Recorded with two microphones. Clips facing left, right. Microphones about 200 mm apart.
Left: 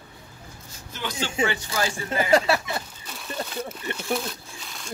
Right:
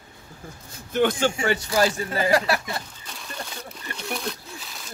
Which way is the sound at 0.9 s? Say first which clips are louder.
Right 11 dB; 50° right (ahead or behind).